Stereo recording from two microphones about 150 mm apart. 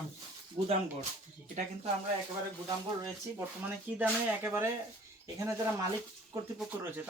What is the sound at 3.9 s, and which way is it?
Speech, 10° right (ahead or behind).